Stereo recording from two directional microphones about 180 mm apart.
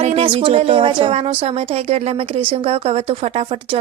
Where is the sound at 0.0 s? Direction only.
35° right (ahead or behind).